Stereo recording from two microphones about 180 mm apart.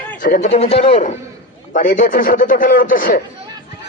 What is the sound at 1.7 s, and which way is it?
A man's voice, 45° left (ahead or behind).